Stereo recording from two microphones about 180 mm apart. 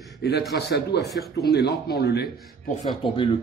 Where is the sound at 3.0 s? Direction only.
30° left (ahead or behind).